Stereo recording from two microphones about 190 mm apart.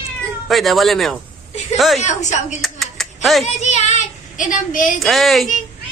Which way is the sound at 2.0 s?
40° left (ahead or behind).